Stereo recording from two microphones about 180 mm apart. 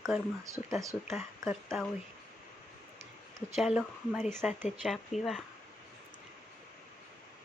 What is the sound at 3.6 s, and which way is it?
A woman's voice, 5° right (ahead or behind).